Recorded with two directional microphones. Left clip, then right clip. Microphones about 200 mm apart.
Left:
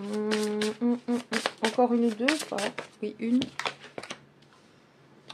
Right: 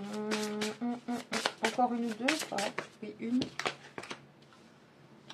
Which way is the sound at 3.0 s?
45° left (ahead or behind).